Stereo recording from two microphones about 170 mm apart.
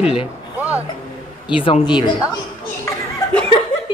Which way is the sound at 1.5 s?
30° left (ahead or behind).